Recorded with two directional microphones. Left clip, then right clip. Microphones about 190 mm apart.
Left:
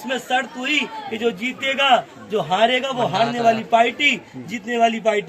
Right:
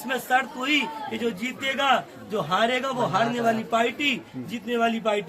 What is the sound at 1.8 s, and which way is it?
Speech, 10° right (ahead or behind).